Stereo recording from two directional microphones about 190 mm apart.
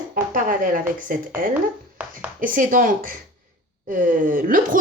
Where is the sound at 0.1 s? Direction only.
45° right (ahead or behind).